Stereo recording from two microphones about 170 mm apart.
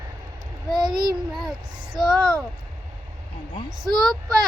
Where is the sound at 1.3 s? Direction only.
Centre (ahead or behind).